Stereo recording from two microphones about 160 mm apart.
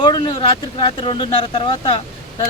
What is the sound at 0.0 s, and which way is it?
Speech, 25° left (ahead or behind).